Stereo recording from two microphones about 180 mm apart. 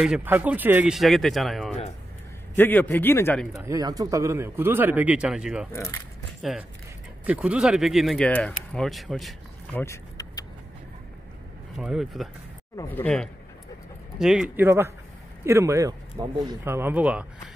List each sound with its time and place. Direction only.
0.0 s speech: 5° right (ahead or behind)
2.5 s a man's voice: 10° left (ahead or behind)
3.6 s speech: 20° right (ahead or behind); by 9.3 s centre (ahead or behind)
9.8 s vehicle: 20° left (ahead or behind)
11.8 s speech: centre (ahead or behind)
12.7 s a man's voice: 10° left (ahead or behind)
15.4 s speech: 15° right (ahead or behind)